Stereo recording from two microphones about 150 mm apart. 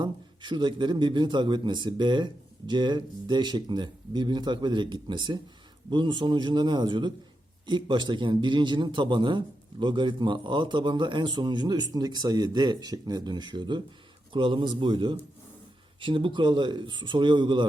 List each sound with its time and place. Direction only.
0.0 s a man's voice: 30° right (ahead or behind)